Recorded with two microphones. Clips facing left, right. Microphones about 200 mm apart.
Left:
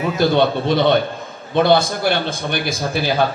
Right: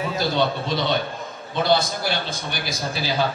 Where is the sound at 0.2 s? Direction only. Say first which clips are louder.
Left 8 dB; 60° left (ahead or behind).